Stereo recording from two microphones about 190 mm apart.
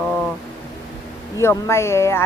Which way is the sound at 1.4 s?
15° left (ahead or behind).